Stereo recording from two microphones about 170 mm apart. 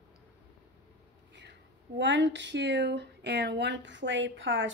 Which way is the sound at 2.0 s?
90° right.